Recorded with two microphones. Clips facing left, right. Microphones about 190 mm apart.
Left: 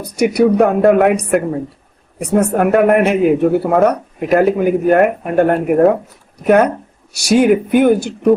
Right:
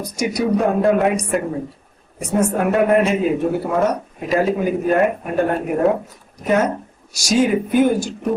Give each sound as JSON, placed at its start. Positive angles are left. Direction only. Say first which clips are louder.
{"t": 0.0, "sound": "speech", "louder": "left 8 dB", "side_deg": 60}
{"t": 7.1, "sound": "speech", "louder": "left 5 dB", "side_deg": 60}